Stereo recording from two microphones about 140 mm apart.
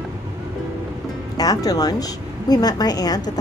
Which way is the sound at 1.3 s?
25° left (ahead or behind).